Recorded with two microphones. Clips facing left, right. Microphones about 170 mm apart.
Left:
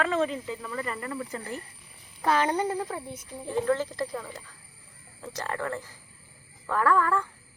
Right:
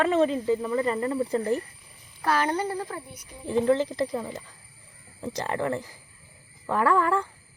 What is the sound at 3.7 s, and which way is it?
Speech, 20° right (ahead or behind).